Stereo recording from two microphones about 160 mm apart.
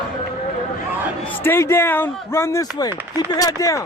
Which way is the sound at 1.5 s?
15° left (ahead or behind).